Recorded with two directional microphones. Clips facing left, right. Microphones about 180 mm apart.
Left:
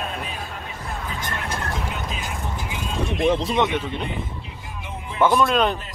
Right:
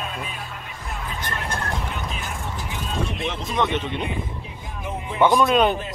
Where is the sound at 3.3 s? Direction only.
30° left (ahead or behind).